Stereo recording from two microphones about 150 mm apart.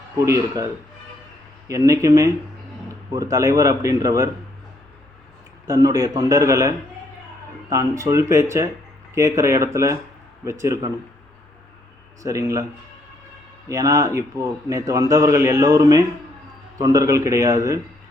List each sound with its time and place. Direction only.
0.3 s a man's voice: 20° right (ahead or behind)
5.6 s a man's voice: 25° right (ahead or behind)
12.2 s a man's voice: 20° right (ahead or behind)
13.7 s a man's voice: 20° right (ahead or behind)